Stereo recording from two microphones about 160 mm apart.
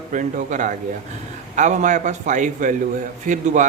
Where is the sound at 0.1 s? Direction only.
55° right (ahead or behind).